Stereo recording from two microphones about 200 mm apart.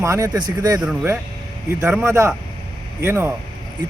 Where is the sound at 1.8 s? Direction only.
10° right (ahead or behind).